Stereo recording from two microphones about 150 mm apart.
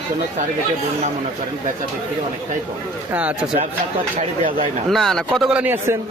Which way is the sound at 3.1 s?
10° right (ahead or behind).